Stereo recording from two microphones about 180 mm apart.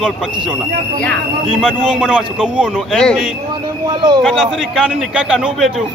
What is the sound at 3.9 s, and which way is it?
Speech, 25° right (ahead or behind).